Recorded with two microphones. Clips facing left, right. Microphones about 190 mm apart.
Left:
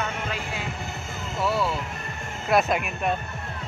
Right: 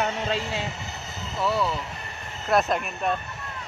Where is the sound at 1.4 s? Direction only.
5° left (ahead or behind).